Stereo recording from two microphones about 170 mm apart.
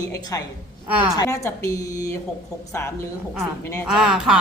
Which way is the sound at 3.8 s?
5° right (ahead or behind).